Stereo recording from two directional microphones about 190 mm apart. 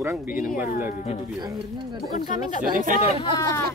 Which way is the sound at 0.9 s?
30° left (ahead or behind).